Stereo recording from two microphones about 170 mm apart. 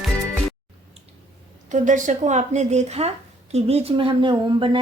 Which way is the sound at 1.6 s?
45° right (ahead or behind).